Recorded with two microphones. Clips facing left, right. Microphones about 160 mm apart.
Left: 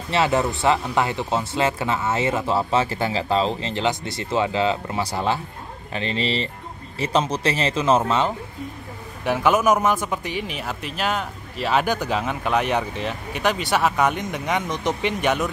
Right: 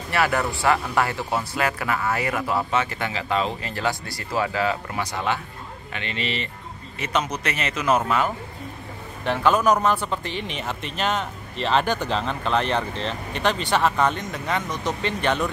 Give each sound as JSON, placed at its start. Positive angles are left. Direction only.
{"t": 0.1, "sound": "speech", "side_deg": 20}
{"t": 9.2, "sound": "speech", "side_deg": 15}